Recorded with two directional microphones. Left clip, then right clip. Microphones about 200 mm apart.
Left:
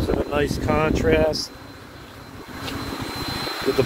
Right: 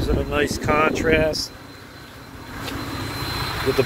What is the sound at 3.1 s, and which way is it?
Vehicle, 50° left (ahead or behind).